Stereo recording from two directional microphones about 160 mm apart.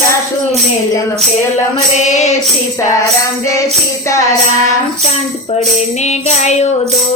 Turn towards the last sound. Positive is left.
turn(degrees=45)  # may be behind; listen again after turning